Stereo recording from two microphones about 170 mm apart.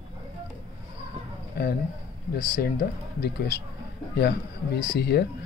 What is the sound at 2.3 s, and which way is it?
Speech, 65° left (ahead or behind).